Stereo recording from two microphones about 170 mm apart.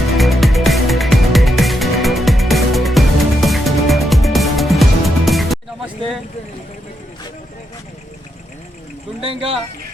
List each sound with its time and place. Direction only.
0.2 s music: centre (ahead or behind)
9.2 s speech: 35° right (ahead or behind)